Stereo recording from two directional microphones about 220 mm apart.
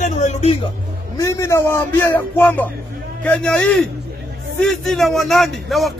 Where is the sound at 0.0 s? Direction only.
30° left (ahead or behind).